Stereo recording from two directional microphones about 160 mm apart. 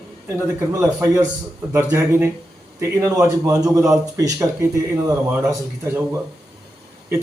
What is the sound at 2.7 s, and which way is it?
Speech, 15° right (ahead or behind).